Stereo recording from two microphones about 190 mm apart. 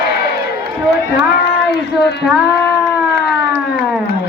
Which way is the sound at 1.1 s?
60° left (ahead or behind).